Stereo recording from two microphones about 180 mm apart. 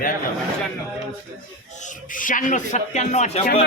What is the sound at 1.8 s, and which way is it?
Speech, 50° left (ahead or behind).